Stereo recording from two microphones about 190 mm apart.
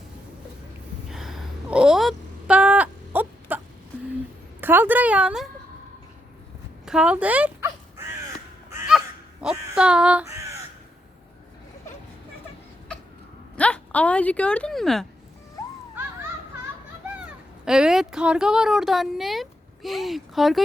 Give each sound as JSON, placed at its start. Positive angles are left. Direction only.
{"t": 1.1, "sound": "a sound", "side_deg": 0}
{"t": 4.6, "sound": "speech", "side_deg": -10}
{"t": 6.8, "sound": "dog", "side_deg": -5}
{"t": 9.4, "sound": "speech", "side_deg": -5}
{"t": 13.6, "sound": "a woman's voice", "side_deg": 5}
{"t": 17.7, "sound": "speech", "side_deg": -5}